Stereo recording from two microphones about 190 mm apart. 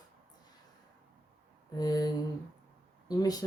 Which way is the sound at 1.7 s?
20° left (ahead or behind).